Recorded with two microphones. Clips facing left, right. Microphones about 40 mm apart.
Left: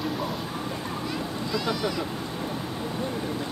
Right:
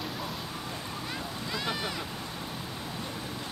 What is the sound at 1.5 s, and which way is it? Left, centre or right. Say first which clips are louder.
Speech: left 5 dB; centre.